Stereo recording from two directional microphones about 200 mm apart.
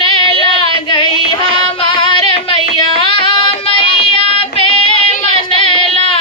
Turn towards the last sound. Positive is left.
turn(degrees=25)  # may be behind; listen again after turning